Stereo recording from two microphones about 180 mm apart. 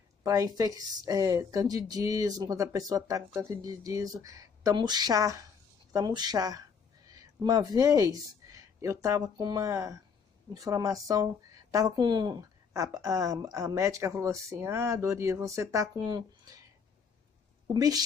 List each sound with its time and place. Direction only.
0.2 s speech: 15° right (ahead or behind)
17.7 s speech: 20° right (ahead or behind)